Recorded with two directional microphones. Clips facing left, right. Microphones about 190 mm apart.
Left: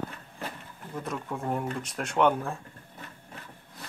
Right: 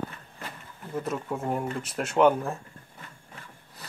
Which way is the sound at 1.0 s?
5° right (ahead or behind).